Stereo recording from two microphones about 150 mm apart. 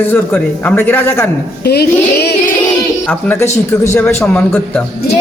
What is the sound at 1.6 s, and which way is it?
Speech, 90° left.